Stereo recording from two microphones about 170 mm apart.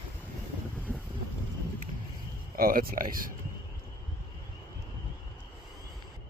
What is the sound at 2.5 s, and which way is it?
Speech, 60° right (ahead or behind).